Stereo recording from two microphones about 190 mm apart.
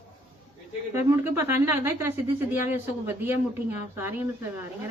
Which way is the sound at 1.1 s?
15° right (ahead or behind).